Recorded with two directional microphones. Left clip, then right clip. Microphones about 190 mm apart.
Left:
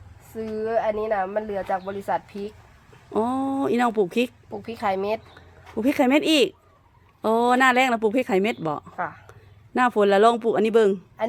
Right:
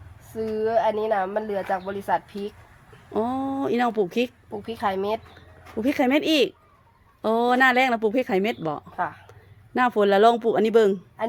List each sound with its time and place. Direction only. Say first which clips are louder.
0.3 s a woman's voice: right 2 dB; 20° left (ahead or behind)
5.7 s a woman's voice: left 2 dB; 15° left (ahead or behind)